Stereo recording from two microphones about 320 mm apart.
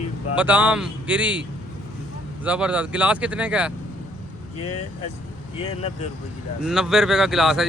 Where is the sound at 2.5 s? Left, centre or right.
Centre.